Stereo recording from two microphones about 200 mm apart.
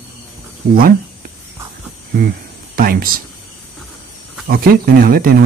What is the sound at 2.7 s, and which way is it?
Speech, 45° right (ahead or behind).